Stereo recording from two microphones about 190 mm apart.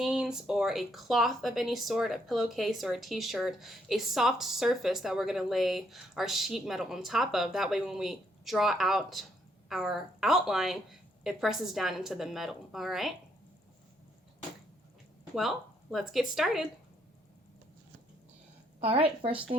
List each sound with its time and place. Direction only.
0.0 s speech: 5° right (ahead or behind)
15.4 s speech: centre (ahead or behind)
18.8 s a woman's voice: 30° right (ahead or behind)